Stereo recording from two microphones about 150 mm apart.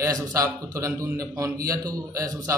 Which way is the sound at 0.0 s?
25° right (ahead or behind).